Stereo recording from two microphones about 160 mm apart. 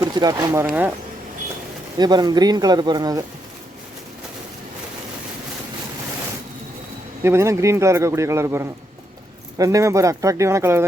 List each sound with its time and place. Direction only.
0.0 s speech: 25° right (ahead or behind)
2.0 s speech: 25° right (ahead or behind)
7.2 s a man's voice: 15° right (ahead or behind)